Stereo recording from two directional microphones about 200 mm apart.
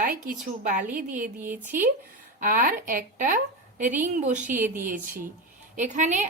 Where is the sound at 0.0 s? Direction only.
45° right (ahead or behind).